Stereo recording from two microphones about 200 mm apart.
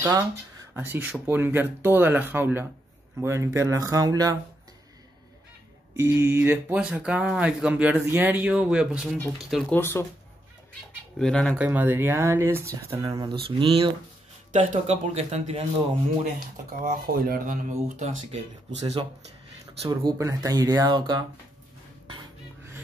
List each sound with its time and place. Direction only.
0.7 s speech: 10° right (ahead or behind)
5.9 s speech: 10° right (ahead or behind)
9.8 s speech: 10° left (ahead or behind)
11.1 s speech: 5° left (ahead or behind)
11.5 s speech: 10° right (ahead or behind); by 13.9 s 25° right (ahead or behind)
14.5 s speech: 40° right (ahead or behind)
16.8 s speech: 45° right (ahead or behind)
19.8 s speech: 25° right (ahead or behind)